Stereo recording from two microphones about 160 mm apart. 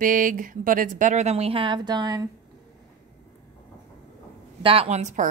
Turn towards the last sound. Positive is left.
turn(degrees=-45)  # may be behind; listen again after turning